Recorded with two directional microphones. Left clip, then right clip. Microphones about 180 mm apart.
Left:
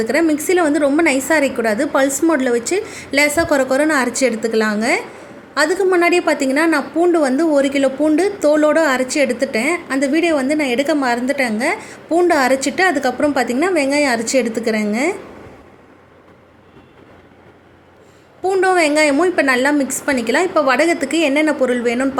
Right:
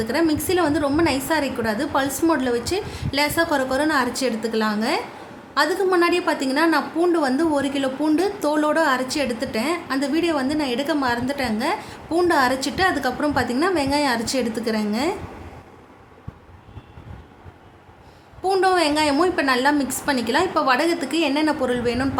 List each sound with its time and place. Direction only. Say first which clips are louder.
0.0 s a woman's voice: left 5 dB; 20° left (ahead or behind)
18.4 s a woman's voice: left 4 dB; 10° left (ahead or behind)